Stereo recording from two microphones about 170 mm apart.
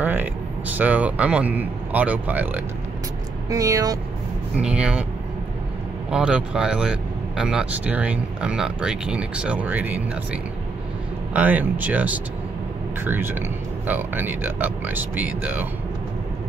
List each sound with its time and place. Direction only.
0.0 s speech: 10° right (ahead or behind)
4.6 s speech: 5° right (ahead or behind)
6.0 s speech: 5° right (ahead or behind)